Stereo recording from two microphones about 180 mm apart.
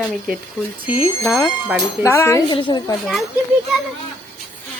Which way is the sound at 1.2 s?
10° left (ahead or behind).